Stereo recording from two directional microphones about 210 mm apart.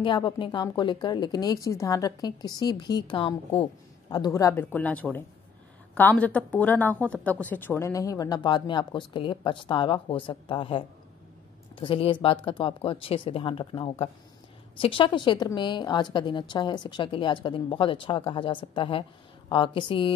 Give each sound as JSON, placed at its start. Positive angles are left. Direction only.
{"t": 0.0, "sound": "a woman's voice", "side_deg": 20}